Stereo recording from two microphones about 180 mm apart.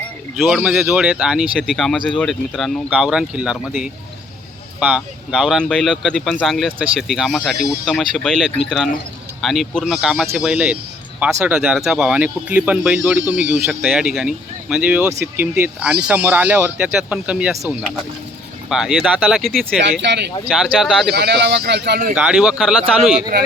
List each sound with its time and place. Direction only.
0.3 s speech: 5° right (ahead or behind)
20.0 s speech: 70° right (ahead or behind)
20.5 s speech: centre (ahead or behind)
21.1 s speech: 65° right (ahead or behind)
22.1 s speech: 5° right (ahead or behind)